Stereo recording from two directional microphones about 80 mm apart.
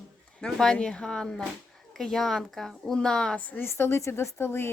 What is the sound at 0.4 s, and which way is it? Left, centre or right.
Speech, centre.